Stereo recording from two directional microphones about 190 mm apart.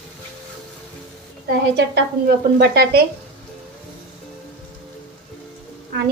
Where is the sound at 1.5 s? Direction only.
55° right (ahead or behind).